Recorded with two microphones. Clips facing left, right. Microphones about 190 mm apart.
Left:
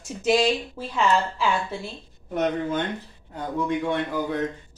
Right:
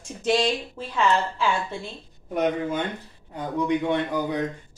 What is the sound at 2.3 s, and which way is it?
A man's voice, 10° right (ahead or behind).